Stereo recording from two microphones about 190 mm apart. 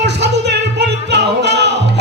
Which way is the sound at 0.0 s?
65° right (ahead or behind).